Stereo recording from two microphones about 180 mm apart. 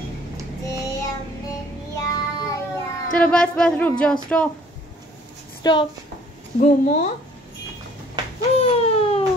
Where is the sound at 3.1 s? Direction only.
5° left (ahead or behind).